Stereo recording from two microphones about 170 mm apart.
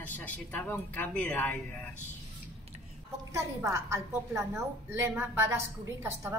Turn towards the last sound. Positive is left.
turn(degrees=-15)  # may be behind; listen again after turning